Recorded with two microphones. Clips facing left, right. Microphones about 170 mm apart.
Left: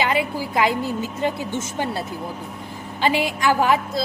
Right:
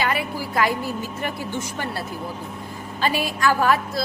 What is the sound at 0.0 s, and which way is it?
A woman's voice, 20° left (ahead or behind).